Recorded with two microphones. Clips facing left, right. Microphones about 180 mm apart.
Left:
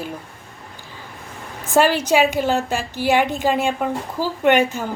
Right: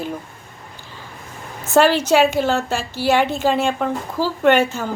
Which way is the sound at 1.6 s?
10° left (ahead or behind).